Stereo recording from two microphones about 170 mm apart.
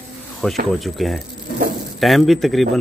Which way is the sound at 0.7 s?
Centre (ahead or behind).